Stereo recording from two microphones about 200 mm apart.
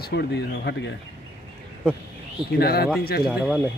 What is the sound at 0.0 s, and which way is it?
Speech, 55° left (ahead or behind).